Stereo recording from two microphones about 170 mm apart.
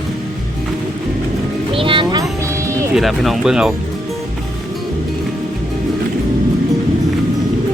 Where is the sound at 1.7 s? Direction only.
30° right (ahead or behind).